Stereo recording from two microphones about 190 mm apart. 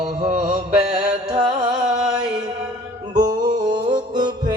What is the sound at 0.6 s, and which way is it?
Mantra, 35° right (ahead or behind).